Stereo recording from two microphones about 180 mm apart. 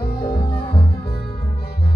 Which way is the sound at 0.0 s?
60° left (ahead or behind).